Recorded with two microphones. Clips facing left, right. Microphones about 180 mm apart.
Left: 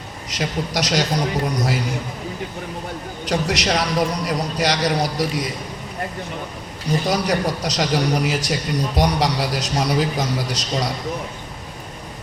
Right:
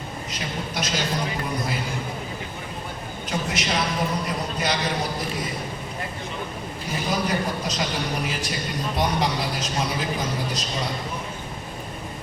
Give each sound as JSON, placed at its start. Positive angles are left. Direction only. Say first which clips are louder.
{"t": 0.3, "sound": "a man's voice", "louder": "left 9 dB", "side_deg": 80}
{"t": 3.2, "sound": "a man's voice", "louder": "left 6 dB", "side_deg": 75}
{"t": 7.1, "sound": "a man's voice", "louder": "left 2 dB", "side_deg": 75}